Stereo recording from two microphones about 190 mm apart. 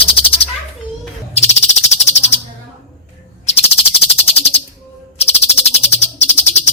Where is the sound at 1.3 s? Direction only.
35° left (ahead or behind).